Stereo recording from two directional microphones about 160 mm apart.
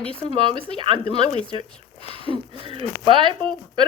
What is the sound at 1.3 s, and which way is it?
Speech, 40° left (ahead or behind).